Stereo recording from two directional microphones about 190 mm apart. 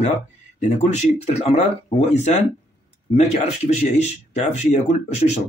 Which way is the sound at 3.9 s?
35° left (ahead or behind).